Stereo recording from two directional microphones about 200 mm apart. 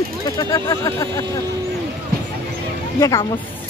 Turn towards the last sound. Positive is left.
turn(degrees=15)  # may be behind; listen again after turning